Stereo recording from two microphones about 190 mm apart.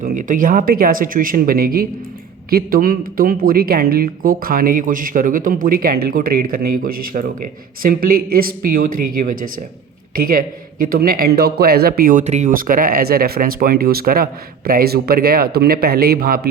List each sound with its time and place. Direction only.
0.0 s speech: 45° right (ahead or behind)